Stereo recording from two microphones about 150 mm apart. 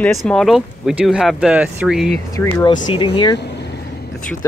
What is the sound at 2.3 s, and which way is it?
Speech, 20° left (ahead or behind).